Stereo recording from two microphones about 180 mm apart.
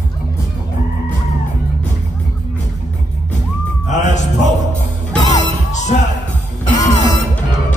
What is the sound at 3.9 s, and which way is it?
Music, 40° left (ahead or behind).